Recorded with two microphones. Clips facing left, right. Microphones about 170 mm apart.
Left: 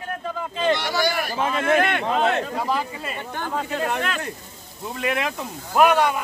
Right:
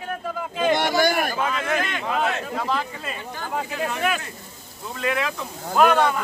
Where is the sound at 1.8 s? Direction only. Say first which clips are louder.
Left 6 dB; 60° left (ahead or behind).